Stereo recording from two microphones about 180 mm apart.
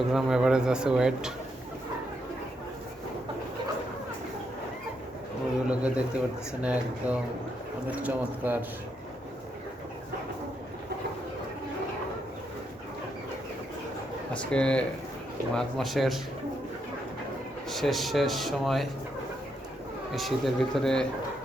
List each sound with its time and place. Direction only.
0.0 s speech: centre (ahead or behind)
5.6 s speech: 5° right (ahead or behind)
14.3 s speech: 5° left (ahead or behind)
17.7 s speech: centre (ahead or behind)
20.1 s speech: centre (ahead or behind)